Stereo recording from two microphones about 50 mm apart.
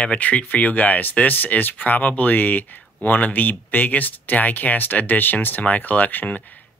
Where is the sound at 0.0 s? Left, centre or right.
Left.